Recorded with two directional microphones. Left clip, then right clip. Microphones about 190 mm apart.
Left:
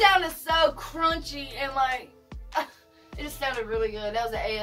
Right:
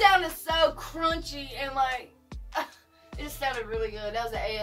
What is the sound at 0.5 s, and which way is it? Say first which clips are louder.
Music: left 1 dB; 10° left (ahead or behind).